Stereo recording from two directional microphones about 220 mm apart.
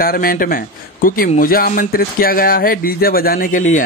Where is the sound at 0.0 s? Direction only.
40° left (ahead or behind).